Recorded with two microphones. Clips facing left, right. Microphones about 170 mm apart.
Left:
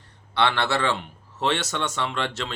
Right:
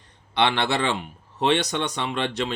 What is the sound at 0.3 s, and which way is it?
A man's voice, 15° right (ahead or behind).